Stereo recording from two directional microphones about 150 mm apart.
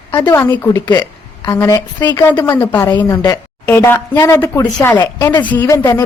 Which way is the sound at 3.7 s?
15° left (ahead or behind).